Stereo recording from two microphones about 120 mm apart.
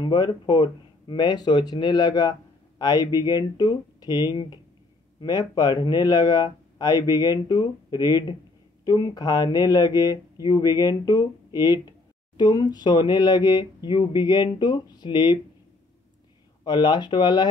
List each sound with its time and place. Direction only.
0.0 s speech: 35° left (ahead or behind)
16.6 s speech: 40° left (ahead or behind)